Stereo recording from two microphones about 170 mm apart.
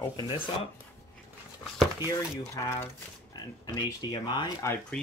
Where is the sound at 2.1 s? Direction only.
20° left (ahead or behind).